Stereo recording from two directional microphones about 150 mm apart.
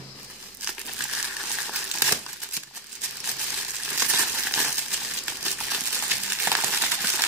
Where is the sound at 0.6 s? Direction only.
5° right (ahead or behind).